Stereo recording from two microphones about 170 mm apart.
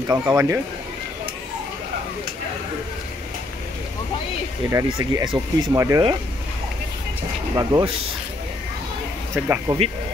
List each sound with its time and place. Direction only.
0.1 s speech: 15° right (ahead or behind)
4.8 s speech: 30° right (ahead or behind)
7.5 s speech: 25° right (ahead or behind)
9.3 s speech: 15° right (ahead or behind)